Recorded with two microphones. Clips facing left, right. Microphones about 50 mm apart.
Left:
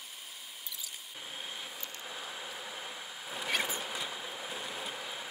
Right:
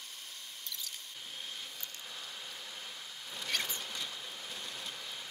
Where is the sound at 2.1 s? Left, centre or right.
Left.